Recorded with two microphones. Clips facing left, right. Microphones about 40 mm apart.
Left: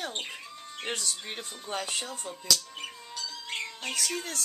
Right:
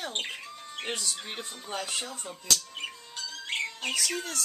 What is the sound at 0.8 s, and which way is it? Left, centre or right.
Speech, centre.